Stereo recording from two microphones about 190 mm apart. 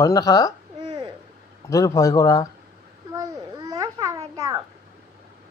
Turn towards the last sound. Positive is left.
turn(degrees=-20)  # may be behind; listen again after turning